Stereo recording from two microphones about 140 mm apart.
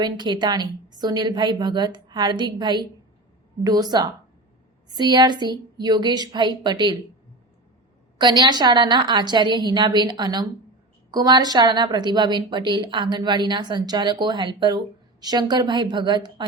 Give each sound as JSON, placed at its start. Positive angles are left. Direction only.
{"t": 0.0, "sound": "a woman's voice", "side_deg": -35}
{"t": 8.2, "sound": "a woman's voice", "side_deg": -30}